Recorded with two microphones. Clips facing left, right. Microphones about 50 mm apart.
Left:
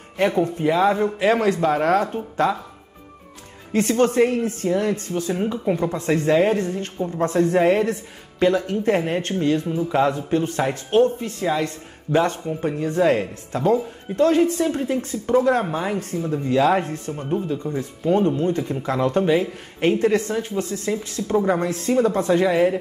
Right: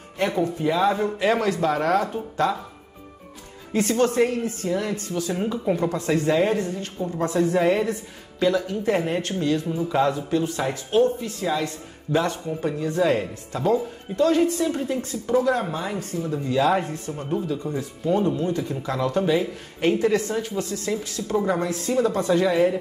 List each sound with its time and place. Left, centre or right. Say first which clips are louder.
0.6 s speech: left 3 dB; left
2.4 s speech: left 3 dB; left
3.9 s speech: left 3 dB; left
9.8 s speech: left 2 dB; left
10.1 s speech: left 2 dB; left
17.2 s speech: left 2 dB; left